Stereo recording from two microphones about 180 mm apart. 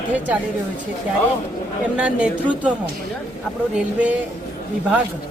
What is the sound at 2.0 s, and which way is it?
Speech, 5° right (ahead or behind).